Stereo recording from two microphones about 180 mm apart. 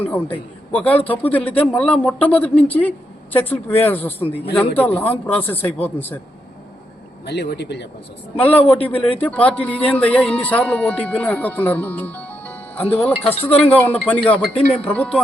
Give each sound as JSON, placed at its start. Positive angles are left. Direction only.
{"t": 0.0, "sound": "speech", "side_deg": 10}
{"t": 7.3, "sound": "speech", "side_deg": 70}
{"t": 8.4, "sound": "speech", "side_deg": 10}
{"t": 13.2, "sound": "speech", "side_deg": 35}
{"t": 13.7, "sound": "speech", "side_deg": 10}